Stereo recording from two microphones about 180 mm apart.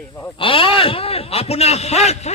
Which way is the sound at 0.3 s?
30° left (ahead or behind).